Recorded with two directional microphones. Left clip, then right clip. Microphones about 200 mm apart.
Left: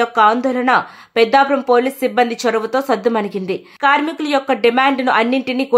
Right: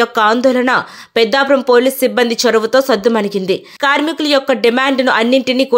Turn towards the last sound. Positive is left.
turn(degrees=-15)  # may be behind; listen again after turning